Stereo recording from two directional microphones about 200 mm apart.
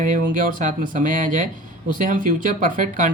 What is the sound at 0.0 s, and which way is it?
Speech, 40° right (ahead or behind).